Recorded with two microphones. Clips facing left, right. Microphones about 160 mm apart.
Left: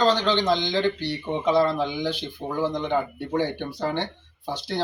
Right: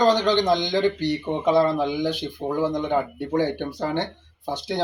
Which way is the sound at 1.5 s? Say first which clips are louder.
Right 2 dB; 15° right (ahead or behind).